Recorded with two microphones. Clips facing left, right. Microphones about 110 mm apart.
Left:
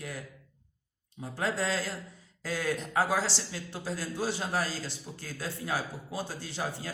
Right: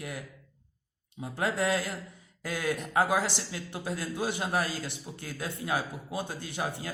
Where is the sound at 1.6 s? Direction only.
55° right (ahead or behind).